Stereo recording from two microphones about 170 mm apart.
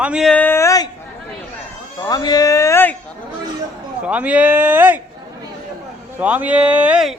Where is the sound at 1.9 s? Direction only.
20° left (ahead or behind).